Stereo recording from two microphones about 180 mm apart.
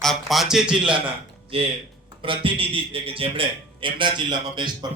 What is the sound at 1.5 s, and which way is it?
A man's voice, 30° right (ahead or behind).